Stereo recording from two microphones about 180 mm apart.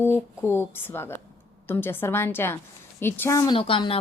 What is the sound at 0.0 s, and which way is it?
Speech, 15° left (ahead or behind).